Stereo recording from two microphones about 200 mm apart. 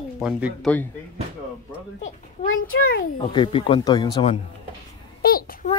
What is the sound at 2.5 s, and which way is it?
Speech, 90° left.